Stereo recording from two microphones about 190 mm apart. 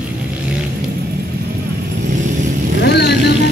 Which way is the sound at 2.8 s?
60° left (ahead or behind).